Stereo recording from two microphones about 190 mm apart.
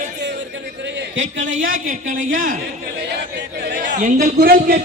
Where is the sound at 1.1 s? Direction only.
85° right.